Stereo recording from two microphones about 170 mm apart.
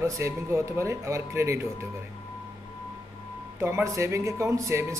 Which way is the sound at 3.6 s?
15° right (ahead or behind).